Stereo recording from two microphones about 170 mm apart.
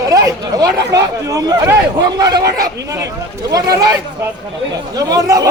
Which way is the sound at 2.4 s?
60° right (ahead or behind).